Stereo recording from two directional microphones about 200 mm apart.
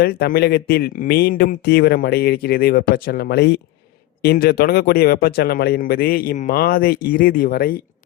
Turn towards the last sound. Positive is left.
turn(degrees=45)  # may be behind; listen again after turning